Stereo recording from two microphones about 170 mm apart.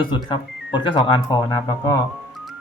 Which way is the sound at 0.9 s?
30° left (ahead or behind).